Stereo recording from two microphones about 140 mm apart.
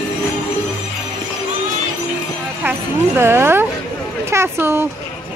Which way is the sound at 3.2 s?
15° right (ahead or behind).